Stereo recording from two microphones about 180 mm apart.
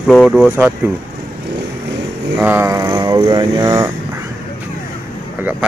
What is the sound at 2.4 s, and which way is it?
Mantra, 10° right (ahead or behind).